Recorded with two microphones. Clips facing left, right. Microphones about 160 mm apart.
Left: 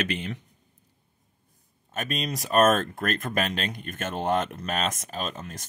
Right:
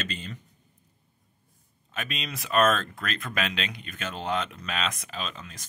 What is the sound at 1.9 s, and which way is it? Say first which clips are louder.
Speech: left 5 dB; 45° left (ahead or behind).